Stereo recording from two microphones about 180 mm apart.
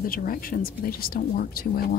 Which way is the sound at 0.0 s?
55° left (ahead or behind).